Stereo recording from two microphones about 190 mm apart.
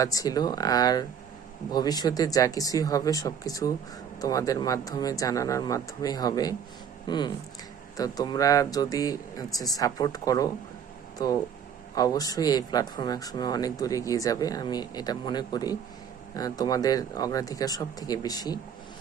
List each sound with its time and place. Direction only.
0.0 s speech: 20° left (ahead or behind)
11.9 s speech: 20° left (ahead or behind)